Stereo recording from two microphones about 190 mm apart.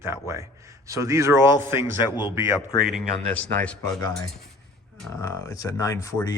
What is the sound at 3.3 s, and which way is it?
Speech, 5° left (ahead or behind).